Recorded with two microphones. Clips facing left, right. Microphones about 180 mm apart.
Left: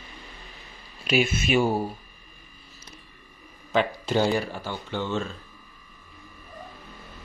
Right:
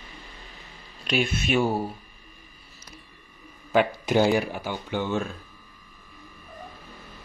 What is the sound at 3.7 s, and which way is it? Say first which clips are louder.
Speech: right 2 dB; 10° right (ahead or behind).